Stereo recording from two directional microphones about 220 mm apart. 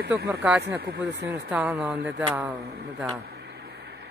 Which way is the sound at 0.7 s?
45° right (ahead or behind).